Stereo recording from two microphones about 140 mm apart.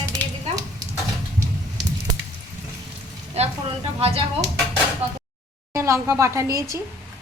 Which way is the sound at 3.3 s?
45° right (ahead or behind).